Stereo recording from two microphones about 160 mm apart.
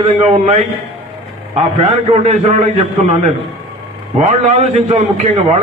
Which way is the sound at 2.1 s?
45° right (ahead or behind).